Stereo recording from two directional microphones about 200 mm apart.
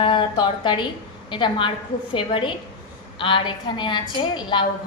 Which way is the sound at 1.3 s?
25° left (ahead or behind).